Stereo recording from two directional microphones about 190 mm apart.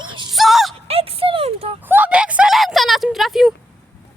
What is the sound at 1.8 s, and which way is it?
Speech, 10° right (ahead or behind).